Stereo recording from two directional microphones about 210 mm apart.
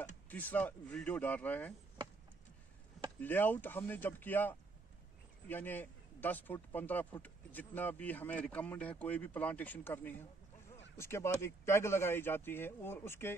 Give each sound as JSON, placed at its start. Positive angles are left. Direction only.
{"t": 0.3, "sound": "a man's voice", "side_deg": 10}
{"t": 3.2, "sound": "a man's voice", "side_deg": 10}